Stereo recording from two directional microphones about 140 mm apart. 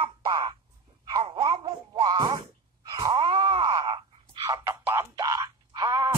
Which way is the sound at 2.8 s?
35° right (ahead or behind).